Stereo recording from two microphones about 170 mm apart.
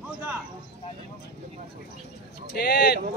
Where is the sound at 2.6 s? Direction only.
65° left (ahead or behind).